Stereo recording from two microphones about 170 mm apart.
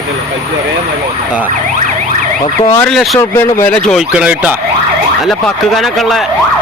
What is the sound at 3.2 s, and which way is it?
Speech, 15° left (ahead or behind).